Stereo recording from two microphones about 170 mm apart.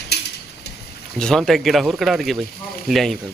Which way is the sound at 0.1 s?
75° left (ahead or behind).